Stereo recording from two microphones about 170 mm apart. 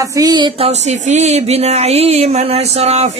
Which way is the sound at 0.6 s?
40° right (ahead or behind).